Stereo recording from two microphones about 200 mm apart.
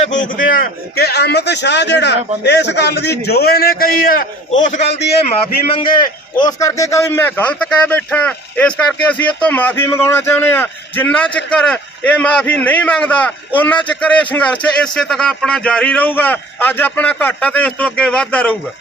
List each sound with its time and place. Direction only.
0.0 s a man's voice: 40° left (ahead or behind)
5.7 s a man's voice: 25° left (ahead or behind); by 18.5 s 5° left (ahead or behind)